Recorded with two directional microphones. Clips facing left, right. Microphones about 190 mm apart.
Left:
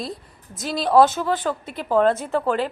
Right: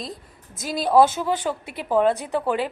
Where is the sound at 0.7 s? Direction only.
10° right (ahead or behind).